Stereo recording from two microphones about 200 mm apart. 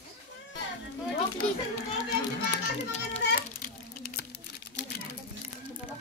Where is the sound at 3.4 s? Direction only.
45° left (ahead or behind).